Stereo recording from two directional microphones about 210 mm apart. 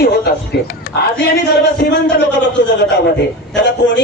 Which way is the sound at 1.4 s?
55° left (ahead or behind).